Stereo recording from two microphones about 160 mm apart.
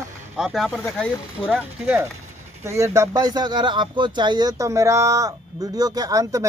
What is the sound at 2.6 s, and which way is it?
Speech, 20° right (ahead or behind).